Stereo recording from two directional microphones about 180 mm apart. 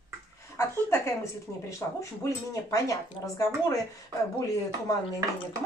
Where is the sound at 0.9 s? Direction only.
15° left (ahead or behind).